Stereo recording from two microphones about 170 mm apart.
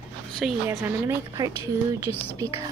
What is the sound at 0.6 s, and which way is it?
Speech, 15° right (ahead or behind).